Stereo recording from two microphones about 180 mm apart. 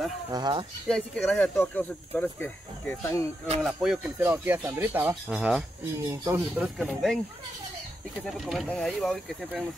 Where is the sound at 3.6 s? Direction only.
Centre (ahead or behind).